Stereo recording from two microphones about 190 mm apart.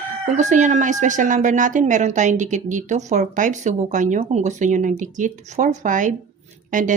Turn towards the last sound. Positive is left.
turn(degrees=-45)  # may be behind; listen again after turning